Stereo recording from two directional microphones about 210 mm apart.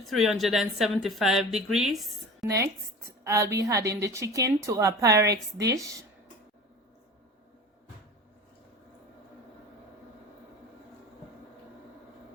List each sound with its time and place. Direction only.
0.0 s a woman's voice: centre (ahead or behind)
3.2 s a woman's voice: 15° right (ahead or behind)